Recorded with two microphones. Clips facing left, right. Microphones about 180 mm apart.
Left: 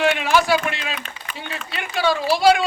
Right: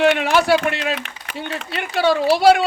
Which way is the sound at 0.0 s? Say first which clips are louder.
Right 3 dB; 60° right (ahead or behind).